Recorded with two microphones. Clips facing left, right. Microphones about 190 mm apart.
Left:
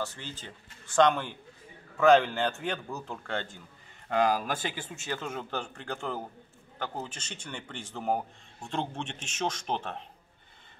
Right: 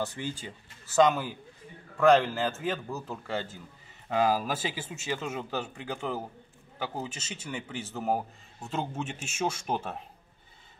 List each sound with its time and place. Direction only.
0.0 s a man's voice: 15° right (ahead or behind)